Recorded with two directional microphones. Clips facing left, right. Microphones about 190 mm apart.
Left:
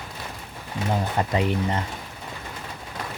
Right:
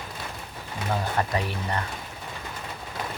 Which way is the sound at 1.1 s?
20° left (ahead or behind).